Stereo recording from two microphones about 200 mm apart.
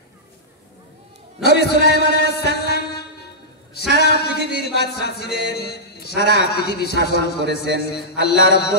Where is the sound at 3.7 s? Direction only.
55° left (ahead or behind).